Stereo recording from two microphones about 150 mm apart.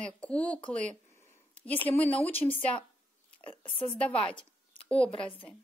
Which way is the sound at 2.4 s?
25° left (ahead or behind).